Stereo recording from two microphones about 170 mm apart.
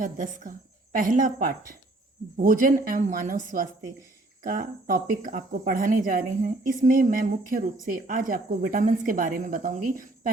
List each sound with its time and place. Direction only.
0.0 s speech: 50° right (ahead or behind)